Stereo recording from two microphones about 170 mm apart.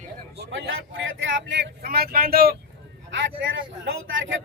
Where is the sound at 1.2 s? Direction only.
90° right; by 2.6 s 65° right (ahead or behind).